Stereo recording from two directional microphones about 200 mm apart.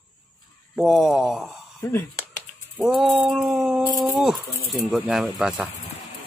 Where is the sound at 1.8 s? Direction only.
15° left (ahead or behind).